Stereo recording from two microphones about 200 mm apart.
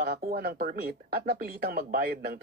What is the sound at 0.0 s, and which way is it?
Speech, 45° right (ahead or behind).